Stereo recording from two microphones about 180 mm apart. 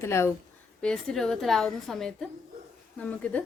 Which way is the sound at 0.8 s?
5° left (ahead or behind).